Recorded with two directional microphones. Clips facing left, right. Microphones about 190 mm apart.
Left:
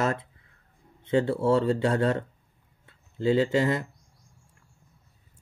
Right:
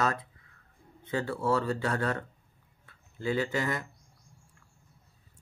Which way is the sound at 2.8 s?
25° left (ahead or behind).